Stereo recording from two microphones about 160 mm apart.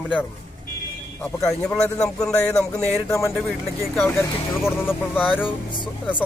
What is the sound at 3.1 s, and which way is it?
Speech, 20° left (ahead or behind).